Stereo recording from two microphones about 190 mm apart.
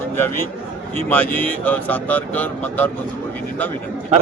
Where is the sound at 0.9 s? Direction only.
10° left (ahead or behind).